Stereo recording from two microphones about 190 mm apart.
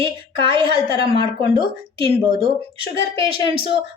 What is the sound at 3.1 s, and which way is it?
Speech, 25° right (ahead or behind).